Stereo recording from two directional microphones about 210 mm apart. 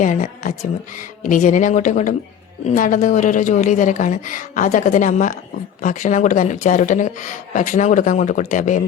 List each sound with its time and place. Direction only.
0.0 s speech: 35° left (ahead or behind)